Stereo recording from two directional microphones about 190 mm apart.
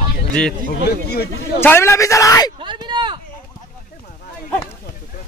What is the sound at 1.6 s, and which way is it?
Speech, 15° left (ahead or behind).